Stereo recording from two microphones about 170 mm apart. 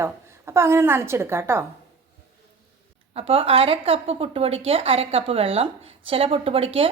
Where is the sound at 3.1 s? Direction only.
35° right (ahead or behind).